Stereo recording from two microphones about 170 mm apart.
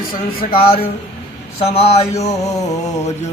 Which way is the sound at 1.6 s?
35° left (ahead or behind).